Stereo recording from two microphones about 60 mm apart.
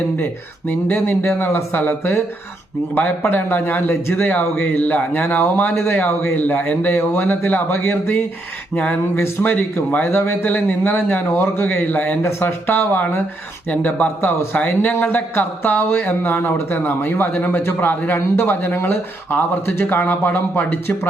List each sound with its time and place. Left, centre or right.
0.7 s a man's voice: left
9.4 s a man's voice: left
13.7 s a man's voice: left
18.3 s a man's voice: left